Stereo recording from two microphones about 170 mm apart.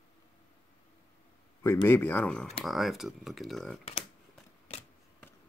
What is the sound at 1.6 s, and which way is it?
Speech, 15° left (ahead or behind).